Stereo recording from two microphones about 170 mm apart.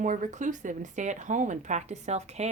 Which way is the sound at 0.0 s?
45° right (ahead or behind).